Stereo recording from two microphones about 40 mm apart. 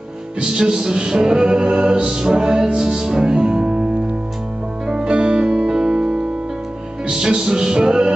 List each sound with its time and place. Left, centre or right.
0.4 s music: right
4.8 s music: centre